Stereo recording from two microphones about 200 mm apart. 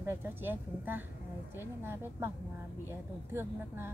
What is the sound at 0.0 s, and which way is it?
A woman's voice, 10° right (ahead or behind).